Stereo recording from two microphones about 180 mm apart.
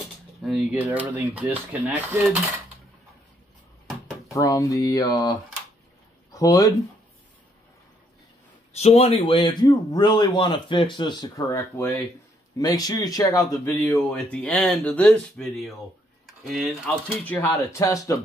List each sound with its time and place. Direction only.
0.4 s speech: 5° right (ahead or behind)
4.3 s speech: 15° left (ahead or behind)
6.3 s speech: 20° left (ahead or behind)
8.7 s speech: 35° left (ahead or behind); by 13.6 s 20° left (ahead or behind)
13.7 s speech: 5° left (ahead or behind)